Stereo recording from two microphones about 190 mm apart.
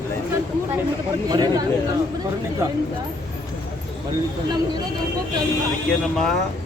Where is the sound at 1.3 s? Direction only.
20° right (ahead or behind).